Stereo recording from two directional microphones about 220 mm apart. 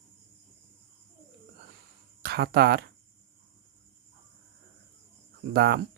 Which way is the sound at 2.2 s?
45° right (ahead or behind).